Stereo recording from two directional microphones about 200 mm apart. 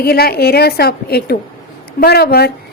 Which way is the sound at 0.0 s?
50° left (ahead or behind).